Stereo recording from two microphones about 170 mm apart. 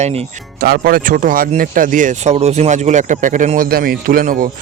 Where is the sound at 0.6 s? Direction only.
60° right (ahead or behind).